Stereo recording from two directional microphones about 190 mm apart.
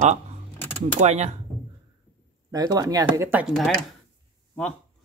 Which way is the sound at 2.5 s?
20° right (ahead or behind).